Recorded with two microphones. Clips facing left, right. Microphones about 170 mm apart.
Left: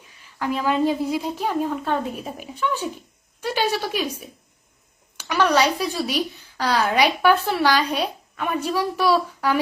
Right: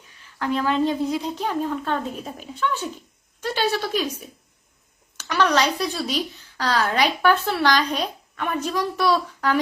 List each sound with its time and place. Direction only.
0.3 s a woman's voice: 10° left (ahead or behind)
5.1 s a woman's voice: 10° left (ahead or behind)